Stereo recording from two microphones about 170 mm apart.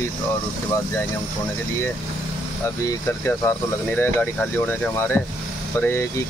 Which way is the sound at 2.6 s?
15° left (ahead or behind).